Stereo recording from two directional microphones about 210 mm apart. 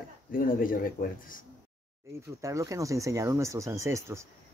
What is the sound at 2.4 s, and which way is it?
Speech, 15° right (ahead or behind).